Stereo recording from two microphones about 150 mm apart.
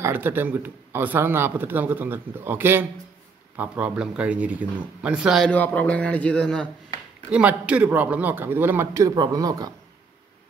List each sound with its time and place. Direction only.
0.0 s speech: 15° right (ahead or behind)
5.5 s a man's voice: 10° left (ahead or behind)
7.2 s speech: 10° right (ahead or behind); by 9.7 s 25° right (ahead or behind)